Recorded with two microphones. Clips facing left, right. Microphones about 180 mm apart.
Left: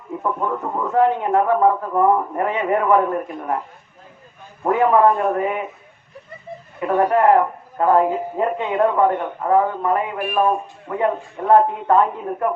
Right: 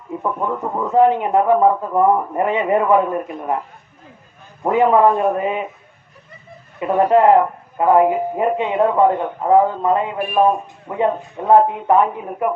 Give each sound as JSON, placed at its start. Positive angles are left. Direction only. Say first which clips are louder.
{"t": 0.2, "sound": "speech", "louder": "right 1 dB", "side_deg": -15}
{"t": 4.6, "sound": "speech", "louder": "right 2 dB", "side_deg": -20}
{"t": 6.7, "sound": "a man's voice", "louder": "right 3 dB", "side_deg": -20}